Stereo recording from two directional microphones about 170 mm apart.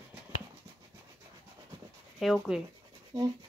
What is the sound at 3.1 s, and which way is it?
Speech, 20° right (ahead or behind).